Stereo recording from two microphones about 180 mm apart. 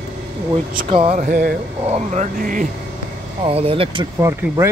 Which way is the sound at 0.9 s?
30° right (ahead or behind).